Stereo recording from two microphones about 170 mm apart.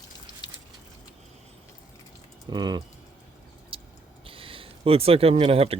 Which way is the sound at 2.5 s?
25° right (ahead or behind).